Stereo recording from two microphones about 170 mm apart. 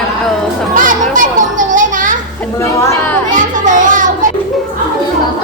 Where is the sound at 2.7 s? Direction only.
15° left (ahead or behind).